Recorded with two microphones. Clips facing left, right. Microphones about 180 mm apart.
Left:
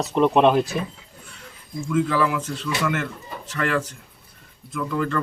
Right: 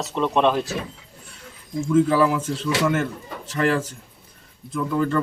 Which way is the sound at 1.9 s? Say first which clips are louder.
Right 4 dB; 30° right (ahead or behind).